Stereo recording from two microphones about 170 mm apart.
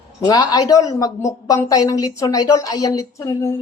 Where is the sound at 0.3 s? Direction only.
20° left (ahead or behind).